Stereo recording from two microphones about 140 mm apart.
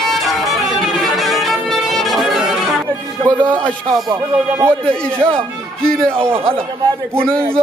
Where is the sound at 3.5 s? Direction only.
5° left (ahead or behind).